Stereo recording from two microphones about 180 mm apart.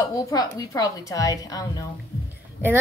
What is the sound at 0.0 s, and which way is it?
A woman's voice, 20° left (ahead or behind).